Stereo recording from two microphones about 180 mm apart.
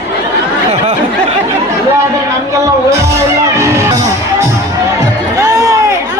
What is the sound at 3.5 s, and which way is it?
Music, 15° right (ahead or behind).